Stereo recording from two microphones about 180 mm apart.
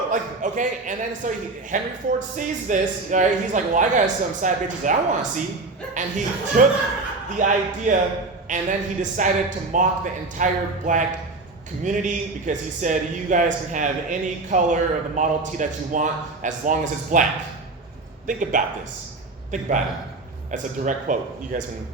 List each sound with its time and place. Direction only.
0.1 s speech: 45° right (ahead or behind)
18.3 s speech: 45° right (ahead or behind)